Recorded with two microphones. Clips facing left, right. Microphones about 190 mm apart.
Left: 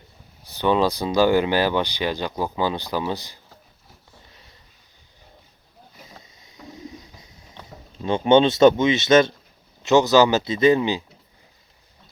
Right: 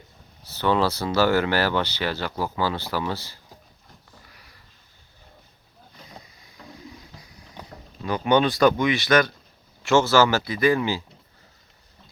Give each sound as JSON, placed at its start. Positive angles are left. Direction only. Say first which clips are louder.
{"t": 0.4, "sound": "speech", "louder": "left 2 dB", "side_deg": 15}
{"t": 4.3, "sound": "sniff", "louder": "left 1 dB", "side_deg": 25}
{"t": 6.2, "sound": "vehicle", "louder": "left 3 dB", "side_deg": 20}
{"t": 8.0, "sound": "speech", "louder": "left 4 dB", "side_deg": 25}